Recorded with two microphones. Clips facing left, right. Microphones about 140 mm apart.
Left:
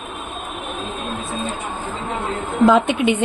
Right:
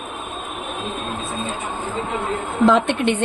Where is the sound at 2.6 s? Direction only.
5° left (ahead or behind).